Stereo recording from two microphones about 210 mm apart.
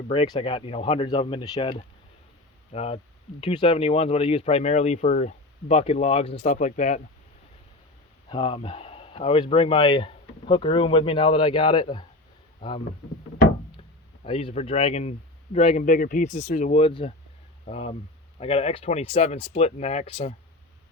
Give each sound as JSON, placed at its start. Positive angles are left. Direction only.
{"t": 0.1, "sound": "speech", "side_deg": 25}
{"t": 8.3, "sound": "speech", "side_deg": 25}
{"t": 14.3, "sound": "speech", "side_deg": 25}